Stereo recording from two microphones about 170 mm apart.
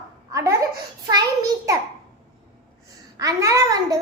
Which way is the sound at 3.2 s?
20° right (ahead or behind).